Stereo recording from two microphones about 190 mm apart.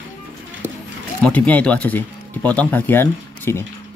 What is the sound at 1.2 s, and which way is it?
Speech, 5° left (ahead or behind).